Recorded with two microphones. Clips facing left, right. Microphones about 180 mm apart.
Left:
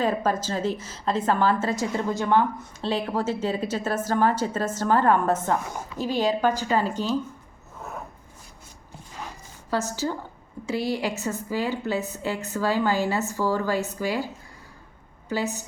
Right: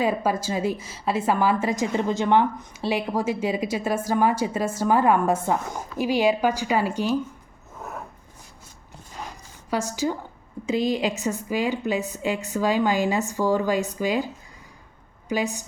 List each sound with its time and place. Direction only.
0.0 s a woman's voice: 10° right (ahead or behind)
9.6 s a woman's voice: 15° right (ahead or behind)
15.3 s a woman's voice: 15° right (ahead or behind)